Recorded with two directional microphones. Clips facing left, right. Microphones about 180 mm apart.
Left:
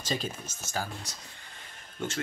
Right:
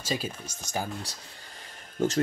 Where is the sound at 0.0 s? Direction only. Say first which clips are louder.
Right 1 dB; 10° right (ahead or behind).